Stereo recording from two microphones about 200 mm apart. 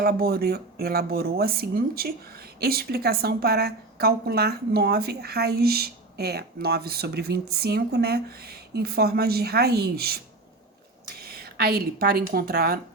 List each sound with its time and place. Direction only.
0.0 s a woman's voice: 50° right (ahead or behind)
11.2 s a sound: 50° right (ahead or behind)
12.3 s a woman's voice: 50° right (ahead or behind)